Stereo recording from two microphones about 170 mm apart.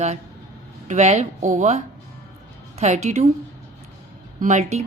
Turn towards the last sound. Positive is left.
turn(degrees=-40)  # may be behind; listen again after turning